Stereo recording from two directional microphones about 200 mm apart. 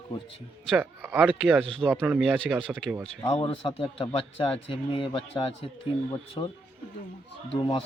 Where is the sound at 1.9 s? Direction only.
10° right (ahead or behind).